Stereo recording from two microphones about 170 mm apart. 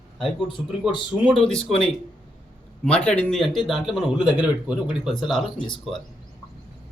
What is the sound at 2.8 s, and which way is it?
Speech, 5° left (ahead or behind).